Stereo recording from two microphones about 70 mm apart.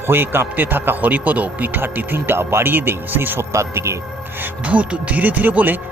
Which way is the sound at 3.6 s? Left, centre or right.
Right.